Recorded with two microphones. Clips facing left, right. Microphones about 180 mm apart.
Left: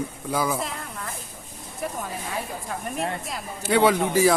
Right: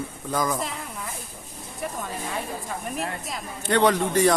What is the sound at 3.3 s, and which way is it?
A man's voice, 5° left (ahead or behind).